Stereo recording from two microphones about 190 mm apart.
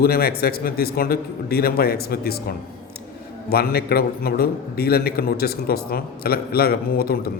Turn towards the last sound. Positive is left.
turn(degrees=50)  # may be behind; listen again after turning